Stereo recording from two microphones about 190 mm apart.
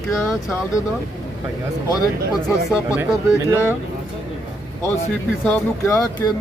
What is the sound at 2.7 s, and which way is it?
Speech, 5° right (ahead or behind).